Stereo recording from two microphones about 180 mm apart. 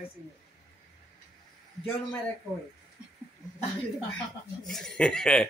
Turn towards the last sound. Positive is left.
turn(degrees=5)  # may be behind; listen again after turning